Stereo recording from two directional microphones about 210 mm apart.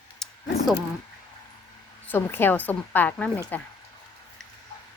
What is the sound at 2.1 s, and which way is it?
A woman's voice, 10° left (ahead or behind).